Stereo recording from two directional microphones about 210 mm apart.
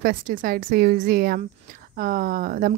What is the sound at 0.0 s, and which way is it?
A woman's voice, 40° right (ahead or behind).